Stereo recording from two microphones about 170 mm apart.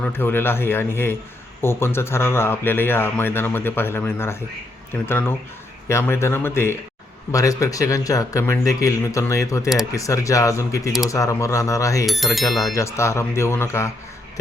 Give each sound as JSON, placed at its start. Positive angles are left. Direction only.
{"t": 0.0, "sound": "speech", "side_deg": 10}
{"t": 12.0, "sound": "a sound", "side_deg": 0}
{"t": 12.7, "sound": "speech", "side_deg": 15}